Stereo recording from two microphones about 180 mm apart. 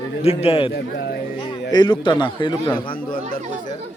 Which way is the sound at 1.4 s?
25° left (ahead or behind).